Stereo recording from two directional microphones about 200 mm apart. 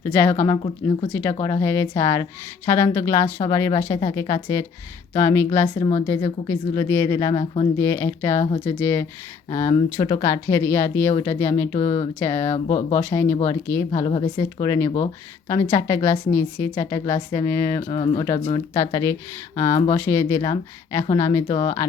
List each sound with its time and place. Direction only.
0.1 s speech: 10° left (ahead or behind)
0.6 s speech: 25° left (ahead or behind)
1.1 s speech: 15° left (ahead or behind)
5.7 s speech: 25° left (ahead or behind)
6.5 s speech: 10° left (ahead or behind)
11.8 s speech: 30° left (ahead or behind)
12.2 s speech: 15° left (ahead or behind)
14.0 s speech: 25° left (ahead or behind)
17.7 s speech: 25° left (ahead or behind)